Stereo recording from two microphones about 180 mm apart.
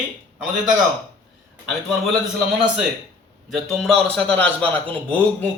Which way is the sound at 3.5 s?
5° left (ahead or behind).